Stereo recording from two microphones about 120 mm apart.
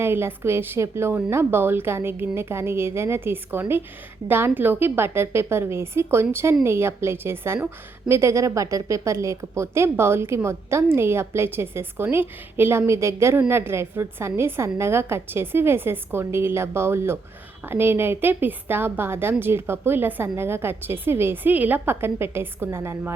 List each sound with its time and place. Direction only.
0.0 s a woman's voice: 20° right (ahead or behind)